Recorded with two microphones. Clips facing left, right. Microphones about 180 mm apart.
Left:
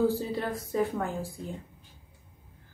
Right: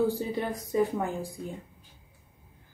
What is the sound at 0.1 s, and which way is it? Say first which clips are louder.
A woman's voice: even; 15° right (ahead or behind).